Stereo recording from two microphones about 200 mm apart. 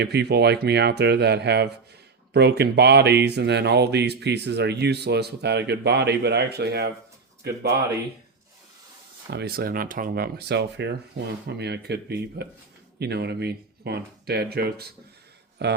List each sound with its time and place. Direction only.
0.0 s speech: 55° right (ahead or behind)
9.3 s speech: 55° right (ahead or behind)